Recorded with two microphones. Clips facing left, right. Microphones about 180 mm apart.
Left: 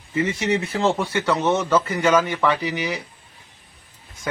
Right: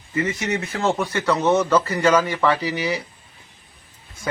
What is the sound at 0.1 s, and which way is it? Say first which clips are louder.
Speech: left 2 dB; 25° left (ahead or behind).